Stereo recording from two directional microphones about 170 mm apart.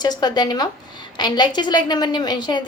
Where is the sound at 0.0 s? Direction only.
25° left (ahead or behind).